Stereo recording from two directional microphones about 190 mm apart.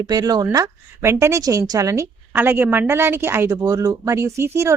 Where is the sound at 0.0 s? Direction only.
20° right (ahead or behind).